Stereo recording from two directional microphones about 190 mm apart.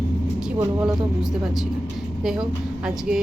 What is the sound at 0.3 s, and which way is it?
Speech, 5° right (ahead or behind).